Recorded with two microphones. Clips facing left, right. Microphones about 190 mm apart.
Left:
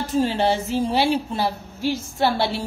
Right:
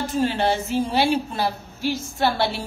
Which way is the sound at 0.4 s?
30° left (ahead or behind).